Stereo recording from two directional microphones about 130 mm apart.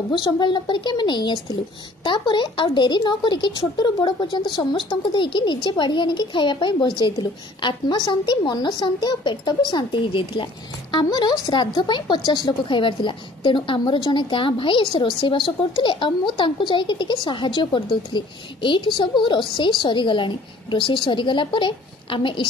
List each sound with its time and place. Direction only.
0.1 s speech: 35° left (ahead or behind)